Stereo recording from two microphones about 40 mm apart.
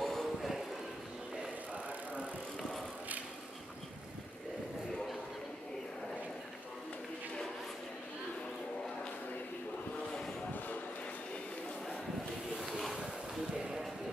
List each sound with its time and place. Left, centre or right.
0.0 s music: centre
1.7 s bicycle: right
9.9 s vehicle: centre
12.5 s boat: centre